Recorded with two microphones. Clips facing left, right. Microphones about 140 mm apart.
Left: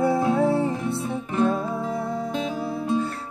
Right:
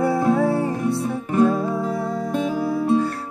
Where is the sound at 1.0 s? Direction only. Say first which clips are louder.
Right 5 dB; 45° right (ahead or behind).